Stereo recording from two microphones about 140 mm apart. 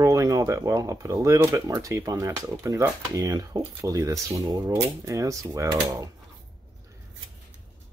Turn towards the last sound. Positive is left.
turn(degrees=-25)  # may be behind; listen again after turning